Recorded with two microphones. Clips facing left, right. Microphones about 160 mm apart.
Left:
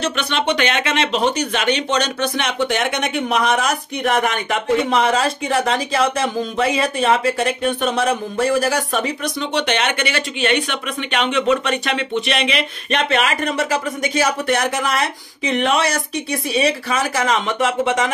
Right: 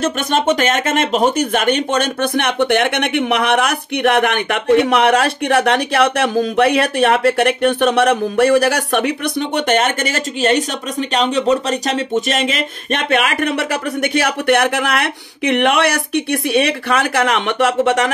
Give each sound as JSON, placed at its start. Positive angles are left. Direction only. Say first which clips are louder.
{"t": 0.0, "sound": "speech", "louder": "right 4 dB", "side_deg": -45}